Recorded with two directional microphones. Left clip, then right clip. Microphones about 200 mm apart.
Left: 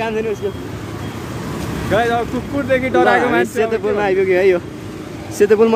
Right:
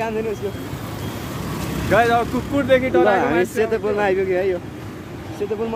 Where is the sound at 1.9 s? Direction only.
20° right (ahead or behind).